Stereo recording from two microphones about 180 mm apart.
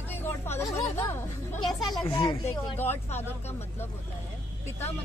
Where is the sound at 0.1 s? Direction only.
15° left (ahead or behind).